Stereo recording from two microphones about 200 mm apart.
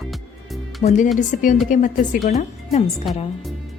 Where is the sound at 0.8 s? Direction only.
40° left (ahead or behind).